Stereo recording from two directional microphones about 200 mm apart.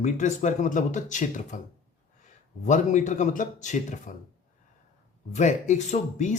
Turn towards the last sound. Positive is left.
turn(degrees=35)  # may be behind; listen again after turning